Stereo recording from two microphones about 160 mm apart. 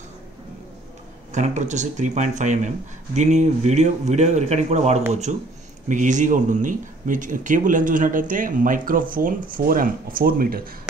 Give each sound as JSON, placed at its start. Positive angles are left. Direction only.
{"t": 1.3, "sound": "a man's voice", "side_deg": -50}